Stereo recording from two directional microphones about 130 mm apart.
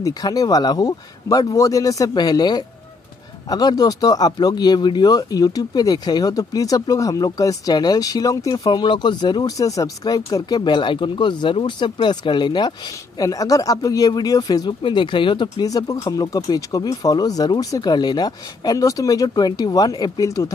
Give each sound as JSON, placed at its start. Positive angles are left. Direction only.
{"t": 0.0, "sound": "speech", "side_deg": 30}